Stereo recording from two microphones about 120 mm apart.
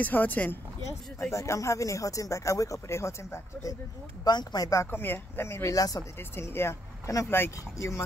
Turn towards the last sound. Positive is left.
turn(degrees=20)  # may be behind; listen again after turning